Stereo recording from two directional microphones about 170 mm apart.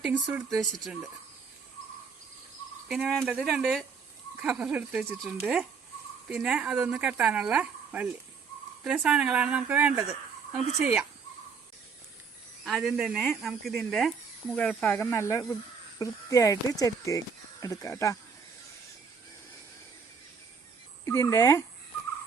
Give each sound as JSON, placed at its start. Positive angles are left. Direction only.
{"t": 0.0, "sound": "speech", "side_deg": -10}
{"t": 0.5, "sound": "speech", "side_deg": 0}
{"t": 2.9, "sound": "speech", "side_deg": 0}
{"t": 12.6, "sound": "speech", "side_deg": 0}
{"t": 21.0, "sound": "speech", "side_deg": 15}